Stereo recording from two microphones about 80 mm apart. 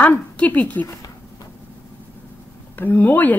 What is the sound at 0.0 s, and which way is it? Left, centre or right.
Speech, left.